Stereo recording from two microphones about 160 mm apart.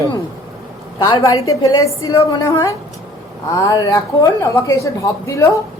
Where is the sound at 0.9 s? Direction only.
25° left (ahead or behind).